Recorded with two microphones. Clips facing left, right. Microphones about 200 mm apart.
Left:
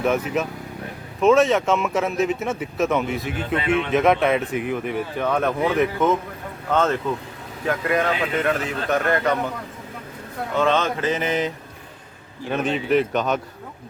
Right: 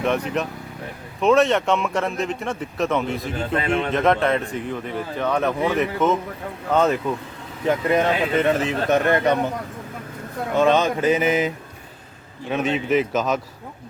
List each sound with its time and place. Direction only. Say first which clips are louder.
0.0 s a man's voice: left 1 dB; 5° left (ahead or behind)
3.5 s a man's voice: left 1 dB; 40° right (ahead or behind)
3.9 s a man's voice: left 2 dB; 5° left (ahead or behind)
7.6 s speech: right 3 dB; 20° right (ahead or behind)
10.6 s mantra: right 3 dB; 15° right (ahead or behind)
12.5 s a man's voice: even; centre (ahead or behind)